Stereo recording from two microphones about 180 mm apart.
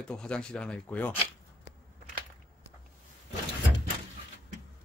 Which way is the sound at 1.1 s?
30° left (ahead or behind).